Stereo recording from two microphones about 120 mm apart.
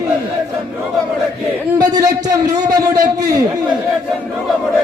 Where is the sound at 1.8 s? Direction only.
30° right (ahead or behind).